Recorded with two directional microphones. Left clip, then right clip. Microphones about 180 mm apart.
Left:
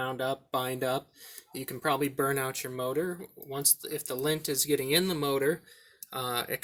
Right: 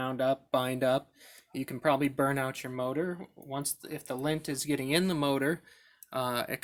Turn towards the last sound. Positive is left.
turn(degrees=-50)  # may be behind; listen again after turning